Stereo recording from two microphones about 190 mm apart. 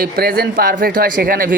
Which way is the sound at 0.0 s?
50° right (ahead or behind).